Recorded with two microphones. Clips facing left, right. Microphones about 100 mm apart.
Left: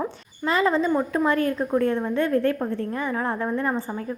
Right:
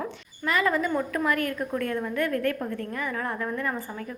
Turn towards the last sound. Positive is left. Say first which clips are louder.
# left 5 dB
turn(degrees=30)  # may be behind; listen again after turning